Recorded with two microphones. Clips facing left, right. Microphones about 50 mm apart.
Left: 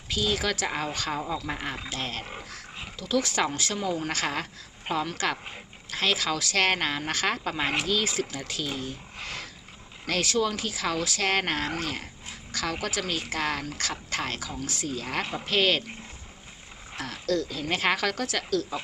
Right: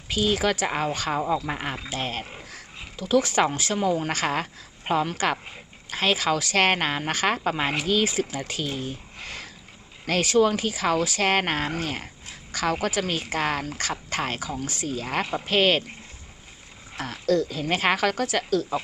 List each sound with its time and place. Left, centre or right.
0.1 s a woman's voice: centre
3.2 s a woman's voice: right
3.5 s speech: centre
3.8 s a woman's voice: right
9.1 s a sound: centre
10.1 s a woman's voice: centre
17.1 s a woman's voice: centre